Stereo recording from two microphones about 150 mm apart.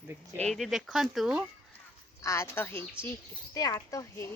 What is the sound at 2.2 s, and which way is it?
Speech, 20° left (ahead or behind).